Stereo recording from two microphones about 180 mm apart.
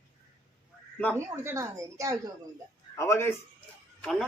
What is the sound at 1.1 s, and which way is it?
Speech, 15° right (ahead or behind).